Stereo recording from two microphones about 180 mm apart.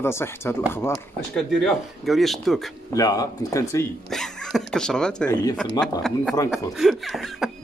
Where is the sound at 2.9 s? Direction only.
20° left (ahead or behind).